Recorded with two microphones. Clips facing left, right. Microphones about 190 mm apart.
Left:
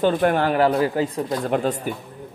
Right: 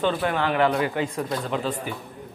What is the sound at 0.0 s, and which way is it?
A man's voice, 45° left (ahead or behind).